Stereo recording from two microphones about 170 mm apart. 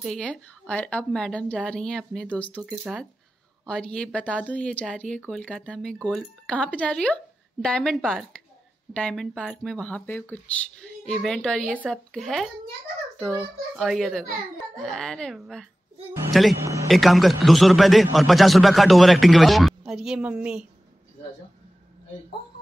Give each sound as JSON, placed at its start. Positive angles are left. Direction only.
{"t": 0.0, "sound": "speech", "side_deg": 5}
{"t": 2.6, "sound": "a man's voice", "side_deg": -5}
{"t": 16.5, "sound": "a man's voice", "side_deg": -15}
{"t": 16.8, "sound": "a man's voice", "side_deg": 0}